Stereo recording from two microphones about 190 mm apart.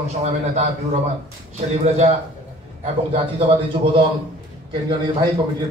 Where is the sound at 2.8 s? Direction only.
35° right (ahead or behind).